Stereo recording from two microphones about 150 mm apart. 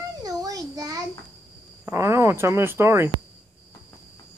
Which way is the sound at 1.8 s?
20° right (ahead or behind).